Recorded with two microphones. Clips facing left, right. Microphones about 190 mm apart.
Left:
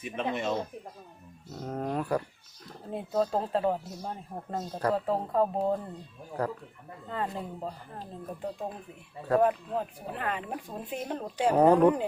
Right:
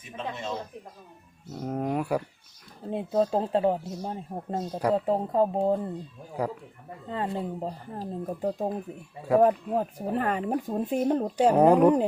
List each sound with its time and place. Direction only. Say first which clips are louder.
0.0 s speech: left 4 dB; 65° left (ahead or behind)
1.5 s speech: right 3 dB; 10° right (ahead or behind)
2.9 s speech: right 3 dB; 25° right (ahead or behind)
6.4 s speech: right 2 dB; 10° right (ahead or behind)
7.1 s speech: right 4 dB; 30° right (ahead or behind)
11.5 s speech: right 1 dB; 10° right (ahead or behind)